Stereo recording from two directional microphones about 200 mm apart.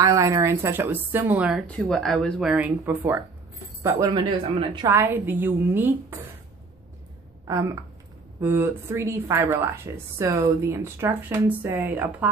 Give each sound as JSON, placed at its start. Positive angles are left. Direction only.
{"t": 0.0, "sound": "speech", "side_deg": -15}
{"t": 3.8, "sound": "speech", "side_deg": -20}
{"t": 4.9, "sound": "speech", "side_deg": -10}
{"t": 7.4, "sound": "speech", "side_deg": -15}